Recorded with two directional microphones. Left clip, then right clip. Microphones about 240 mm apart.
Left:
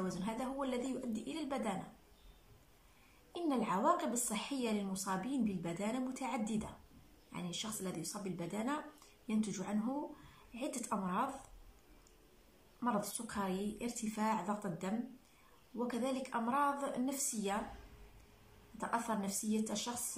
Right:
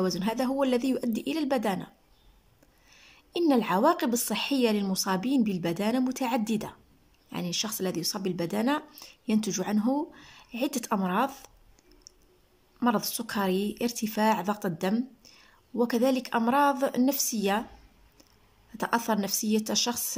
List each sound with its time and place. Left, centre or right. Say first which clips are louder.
0.0 s a woman's voice: right 12 dB; right
3.3 s a woman's voice: right 12 dB; right
12.8 s a woman's voice: right 10 dB; right
18.8 s a woman's voice: right 10 dB; right